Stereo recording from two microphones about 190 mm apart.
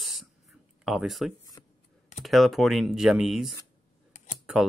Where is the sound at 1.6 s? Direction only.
20° left (ahead or behind).